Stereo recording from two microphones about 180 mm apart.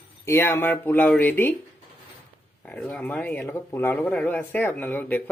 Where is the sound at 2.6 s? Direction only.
5° left (ahead or behind).